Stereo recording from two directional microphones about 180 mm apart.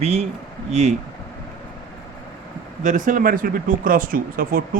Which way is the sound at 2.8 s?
45° right (ahead or behind).